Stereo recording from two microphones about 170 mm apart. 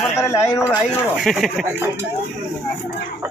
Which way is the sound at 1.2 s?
Centre (ahead or behind).